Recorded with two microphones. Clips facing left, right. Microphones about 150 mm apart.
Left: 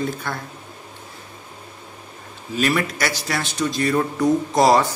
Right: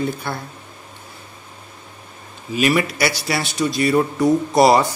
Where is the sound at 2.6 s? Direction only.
10° right (ahead or behind).